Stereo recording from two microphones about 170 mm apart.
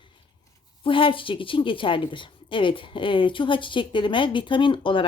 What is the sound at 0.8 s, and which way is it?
A woman's voice, 30° left (ahead or behind).